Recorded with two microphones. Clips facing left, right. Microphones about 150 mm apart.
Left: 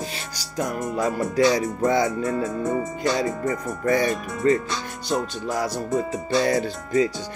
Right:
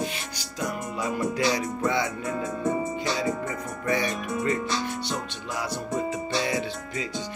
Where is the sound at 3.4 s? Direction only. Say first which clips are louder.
Left 6 dB; 40° left (ahead or behind).